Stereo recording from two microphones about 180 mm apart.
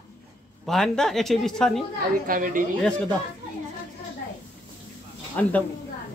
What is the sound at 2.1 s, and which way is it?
Speech, 50° right (ahead or behind).